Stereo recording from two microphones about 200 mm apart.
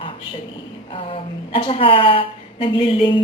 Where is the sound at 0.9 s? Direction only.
25° left (ahead or behind).